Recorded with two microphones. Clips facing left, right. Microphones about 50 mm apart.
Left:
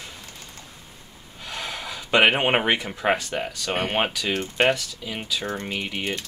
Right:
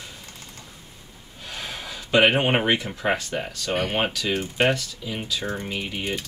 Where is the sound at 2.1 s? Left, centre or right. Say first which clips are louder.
Even; centre.